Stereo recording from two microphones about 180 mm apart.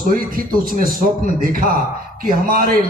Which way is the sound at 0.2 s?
50° right (ahead or behind).